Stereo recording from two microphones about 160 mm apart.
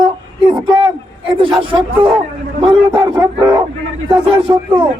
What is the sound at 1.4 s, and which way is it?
A man's voice, 30° right (ahead or behind).